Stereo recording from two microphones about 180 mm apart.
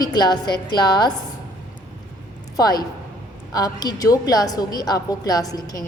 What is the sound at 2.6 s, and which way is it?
A woman's voice, 20° left (ahead or behind).